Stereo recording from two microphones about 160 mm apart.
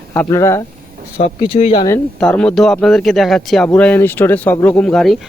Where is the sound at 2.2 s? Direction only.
5° left (ahead or behind).